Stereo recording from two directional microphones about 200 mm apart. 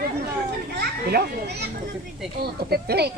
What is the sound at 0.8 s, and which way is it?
A child's voice, 50° right (ahead or behind).